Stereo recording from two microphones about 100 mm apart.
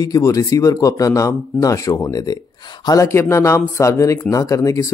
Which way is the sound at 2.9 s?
30° left (ahead or behind).